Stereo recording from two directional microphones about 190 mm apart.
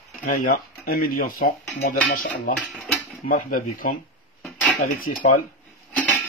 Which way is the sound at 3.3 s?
45° left (ahead or behind).